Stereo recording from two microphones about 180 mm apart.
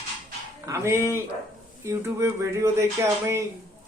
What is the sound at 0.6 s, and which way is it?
Speech, 15° right (ahead or behind).